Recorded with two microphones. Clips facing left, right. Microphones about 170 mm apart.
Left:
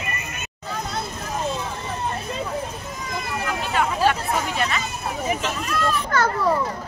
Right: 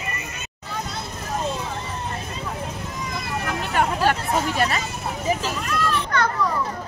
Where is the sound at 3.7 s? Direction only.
45° right (ahead or behind).